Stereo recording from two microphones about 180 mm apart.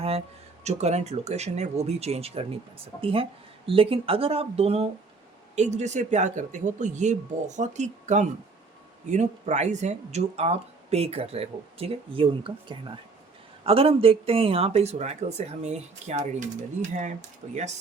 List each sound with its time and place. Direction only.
0.6 s speech: 40° right (ahead or behind)